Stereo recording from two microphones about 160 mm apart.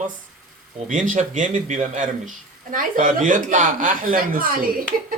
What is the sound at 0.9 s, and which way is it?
A man's voice, 55° right (ahead or behind).